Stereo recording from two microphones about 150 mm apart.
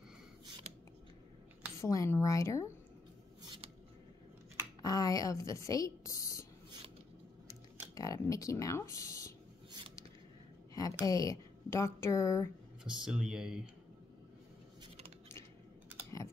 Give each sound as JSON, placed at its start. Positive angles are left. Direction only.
{"t": 0.7, "sound": "scissors", "side_deg": -50}
{"t": 1.8, "sound": "a woman's voice", "side_deg": 20}
{"t": 3.4, "sound": "a sound", "side_deg": -35}
{"t": 4.8, "sound": "speech", "side_deg": 25}
{"t": 7.9, "sound": "speech", "side_deg": 20}
{"t": 10.7, "sound": "a sound", "side_deg": 25}
{"t": 11.1, "sound": "a woman's voice", "side_deg": 25}
{"t": 12.8, "sound": "speech", "side_deg": -5}